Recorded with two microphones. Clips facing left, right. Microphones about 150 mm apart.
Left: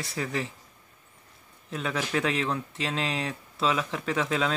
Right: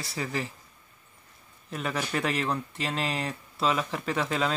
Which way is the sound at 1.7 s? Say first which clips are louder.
Left 1 dB; 5° right (ahead or behind).